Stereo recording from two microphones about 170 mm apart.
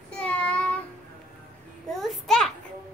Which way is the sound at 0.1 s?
5° left (ahead or behind).